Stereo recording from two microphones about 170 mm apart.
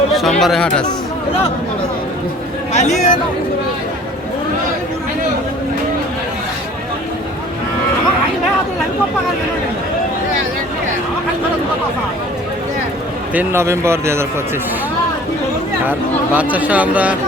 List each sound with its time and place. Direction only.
0.1 s speech: centre (ahead or behind)
2.7 s speech: 45° left (ahead or behind)
13.3 s speech: 15° right (ahead or behind)
15.8 s speech: 10° right (ahead or behind)